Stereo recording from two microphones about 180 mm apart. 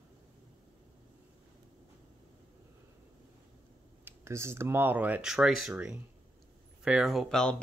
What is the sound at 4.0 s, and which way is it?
Speech, 15° right (ahead or behind).